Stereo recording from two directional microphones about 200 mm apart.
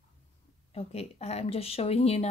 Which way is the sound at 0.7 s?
30° left (ahead or behind).